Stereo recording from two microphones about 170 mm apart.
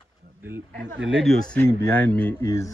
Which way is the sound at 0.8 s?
90° right.